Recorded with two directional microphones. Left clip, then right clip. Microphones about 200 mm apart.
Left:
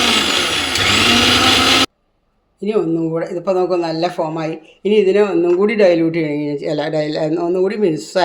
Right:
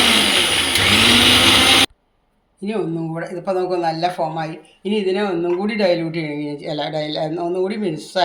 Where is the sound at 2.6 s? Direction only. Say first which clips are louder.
Left 6 dB; 45° left (ahead or behind).